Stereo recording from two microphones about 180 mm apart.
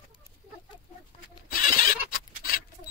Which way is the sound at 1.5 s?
50° left (ahead or behind).